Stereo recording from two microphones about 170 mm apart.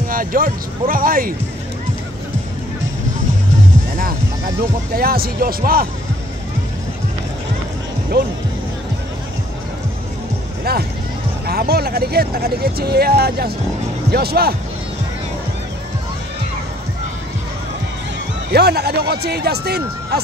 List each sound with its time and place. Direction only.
0.1 s speech: 55° right (ahead or behind)
4.9 s speech: 60° right (ahead or behind)
10.6 s speech: 65° right (ahead or behind)
18.5 s speech: 70° right (ahead or behind)